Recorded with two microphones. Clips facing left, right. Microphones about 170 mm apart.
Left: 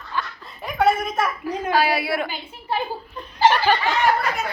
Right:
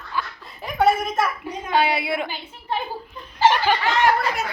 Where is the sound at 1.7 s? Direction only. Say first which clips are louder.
Right 1 dB; 20° right (ahead or behind).